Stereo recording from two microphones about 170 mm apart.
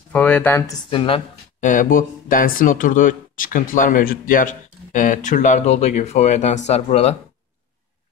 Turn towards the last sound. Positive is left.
turn(degrees=40)  # may be behind; listen again after turning